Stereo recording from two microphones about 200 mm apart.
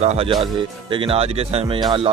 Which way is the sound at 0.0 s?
30° right (ahead or behind).